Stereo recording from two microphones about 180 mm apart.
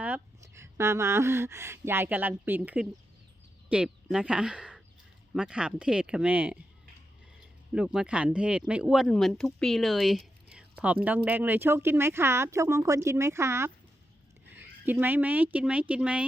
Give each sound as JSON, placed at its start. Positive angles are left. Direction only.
{"t": 0.0, "sound": "speech", "side_deg": -10}
{"t": 7.7, "sound": "speech", "side_deg": -5}
{"t": 14.8, "sound": "speech", "side_deg": -10}